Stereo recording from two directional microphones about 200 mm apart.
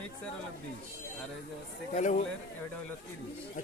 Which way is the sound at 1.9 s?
40° left (ahead or behind).